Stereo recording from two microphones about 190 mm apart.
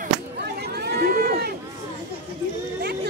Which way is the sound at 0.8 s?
55° right (ahead or behind).